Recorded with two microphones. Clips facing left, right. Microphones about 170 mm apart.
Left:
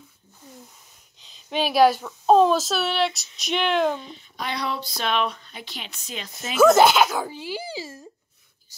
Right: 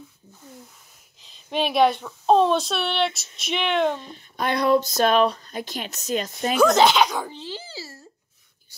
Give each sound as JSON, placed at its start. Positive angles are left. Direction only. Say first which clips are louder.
{"t": 1.2, "sound": "speech", "louder": "right 1 dB", "side_deg": 0}
{"t": 4.1, "sound": "speech", "louder": "right 6 dB", "side_deg": -50}
{"t": 6.5, "sound": "a child's voice", "louder": "left 2 dB", "side_deg": 5}